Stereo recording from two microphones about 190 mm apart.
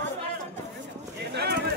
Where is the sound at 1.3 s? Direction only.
60° right (ahead or behind).